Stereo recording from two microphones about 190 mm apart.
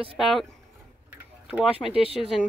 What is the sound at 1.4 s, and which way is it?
Speech, centre (ahead or behind).